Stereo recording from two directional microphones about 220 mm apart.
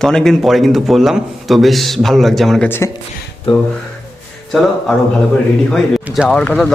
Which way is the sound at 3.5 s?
25° left (ahead or behind).